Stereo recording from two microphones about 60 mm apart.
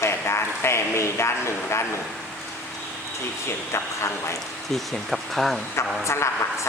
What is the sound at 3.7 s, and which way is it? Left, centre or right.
Speech, left.